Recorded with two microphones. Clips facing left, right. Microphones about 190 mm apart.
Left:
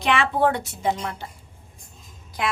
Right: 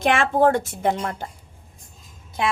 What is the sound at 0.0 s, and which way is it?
A woman's voice, 50° right (ahead or behind).